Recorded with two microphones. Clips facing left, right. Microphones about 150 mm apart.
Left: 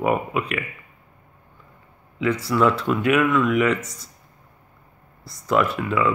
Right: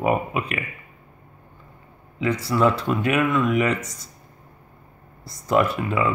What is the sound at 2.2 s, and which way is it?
Speech, 35° right (ahead or behind).